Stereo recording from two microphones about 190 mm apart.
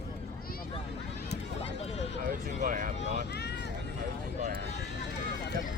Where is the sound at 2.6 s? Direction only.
45° right (ahead or behind).